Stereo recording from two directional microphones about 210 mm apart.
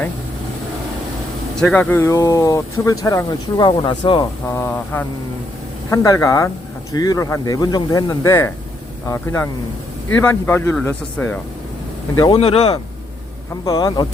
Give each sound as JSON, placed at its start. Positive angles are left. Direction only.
{"t": 1.5, "sound": "speech", "side_deg": 5}
{"t": 12.2, "sound": "speech", "side_deg": 25}